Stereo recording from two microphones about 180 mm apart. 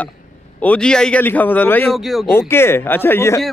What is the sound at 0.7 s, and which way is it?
A man's voice, 5° left (ahead or behind).